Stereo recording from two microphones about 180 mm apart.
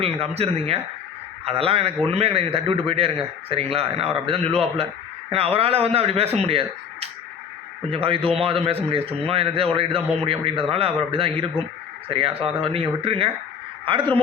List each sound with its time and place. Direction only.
0.0 s a man's voice: 35° right (ahead or behind)